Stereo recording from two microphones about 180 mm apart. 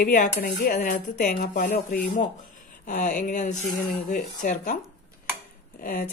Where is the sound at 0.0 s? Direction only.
50° left (ahead or behind).